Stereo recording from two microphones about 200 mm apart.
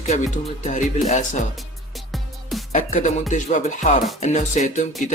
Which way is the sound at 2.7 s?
35° left (ahead or behind).